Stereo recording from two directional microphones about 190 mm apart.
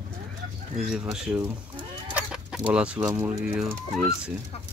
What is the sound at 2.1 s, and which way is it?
Chicken, 5° right (ahead or behind).